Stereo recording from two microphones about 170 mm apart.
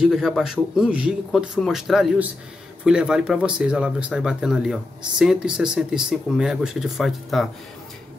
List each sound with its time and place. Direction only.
0.1 s speech: centre (ahead or behind)